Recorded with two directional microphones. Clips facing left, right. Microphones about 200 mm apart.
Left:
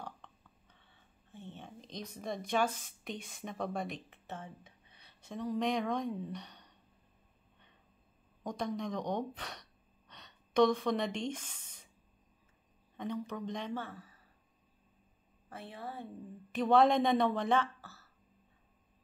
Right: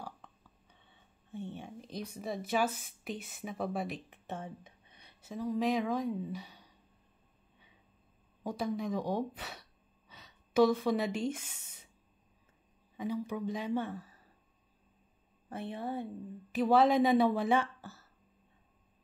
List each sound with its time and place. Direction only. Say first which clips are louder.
0.0 s a sound: right 1 dB; 5° right (ahead or behind)
1.3 s speech: right 7 dB; 15° right (ahead or behind)
4.1 s a sound: right 4 dB; 15° right (ahead or behind)
5.2 s speech: right 2 dB; centre (ahead or behind)
8.5 s speech: right 2 dB; 5° right (ahead or behind)
12.9 s speech: right 3 dB; 5° right (ahead or behind)
15.5 s a woman's voice: right 7 dB; 20° right (ahead or behind)
16.5 s a woman's voice: right 1 dB; 5° right (ahead or behind)